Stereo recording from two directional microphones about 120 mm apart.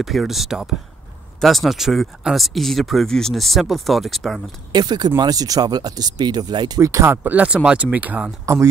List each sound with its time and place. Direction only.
0.0 s speech: centre (ahead or behind)
4.7 s speech: 35° right (ahead or behind)
7.2 s speech: 10° right (ahead or behind)